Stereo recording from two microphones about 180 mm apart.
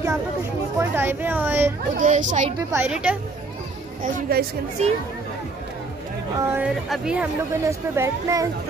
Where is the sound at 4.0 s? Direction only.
60° right (ahead or behind).